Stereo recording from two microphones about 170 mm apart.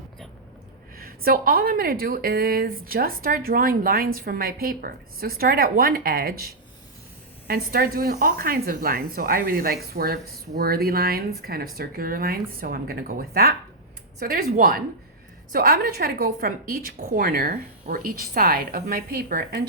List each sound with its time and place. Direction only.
0.9 s a woman's voice: 60° right (ahead or behind)